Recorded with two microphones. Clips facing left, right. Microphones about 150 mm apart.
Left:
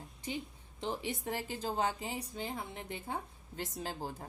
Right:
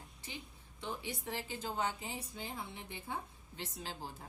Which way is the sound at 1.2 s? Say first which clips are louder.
Left 4 dB; 45° left (ahead or behind).